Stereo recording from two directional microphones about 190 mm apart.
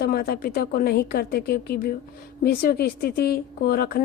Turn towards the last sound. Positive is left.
turn(degrees=50)  # may be behind; listen again after turning